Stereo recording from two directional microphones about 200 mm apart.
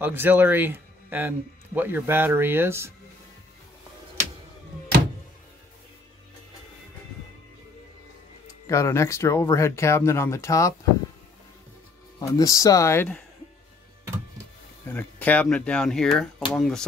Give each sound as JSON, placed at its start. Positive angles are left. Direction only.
{"t": 0.0, "sound": "speech", "side_deg": -10}
{"t": 8.6, "sound": "speech", "side_deg": 15}
{"t": 12.2, "sound": "speech", "side_deg": 15}
{"t": 14.9, "sound": "speech", "side_deg": 10}